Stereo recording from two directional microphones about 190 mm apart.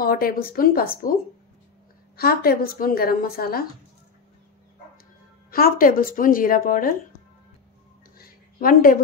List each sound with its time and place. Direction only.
0.0 s a woman's voice: 50° left (ahead or behind)
2.1 s a woman's voice: 55° left (ahead or behind)
5.5 s a woman's voice: 50° left (ahead or behind)
8.2 s a sound: 50° left (ahead or behind)